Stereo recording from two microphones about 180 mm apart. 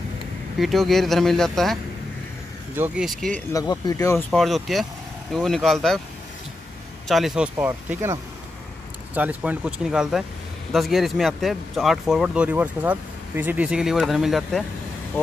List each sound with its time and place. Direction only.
0.6 s speech: centre (ahead or behind)
2.7 s speech: 10° right (ahead or behind)
3.1 s speech: 5° left (ahead or behind)
3.5 s speech: 20° left (ahead or behind)
4.3 s speech: centre (ahead or behind)
7.1 s speech: centre (ahead or behind)